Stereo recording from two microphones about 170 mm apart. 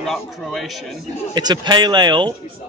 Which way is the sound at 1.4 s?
25° right (ahead or behind).